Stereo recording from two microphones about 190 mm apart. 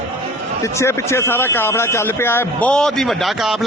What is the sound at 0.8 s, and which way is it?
A man's voice, 15° left (ahead or behind).